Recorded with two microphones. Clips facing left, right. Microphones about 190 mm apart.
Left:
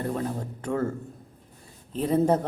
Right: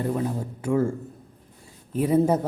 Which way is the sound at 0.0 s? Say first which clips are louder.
Right 3 dB; 10° right (ahead or behind).